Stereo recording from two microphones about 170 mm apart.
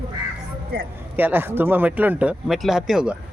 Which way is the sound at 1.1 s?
10° right (ahead or behind).